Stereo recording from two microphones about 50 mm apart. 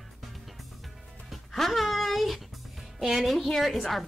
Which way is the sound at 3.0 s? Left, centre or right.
Centre.